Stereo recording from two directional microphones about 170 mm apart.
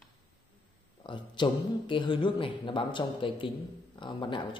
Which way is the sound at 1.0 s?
25° left (ahead or behind).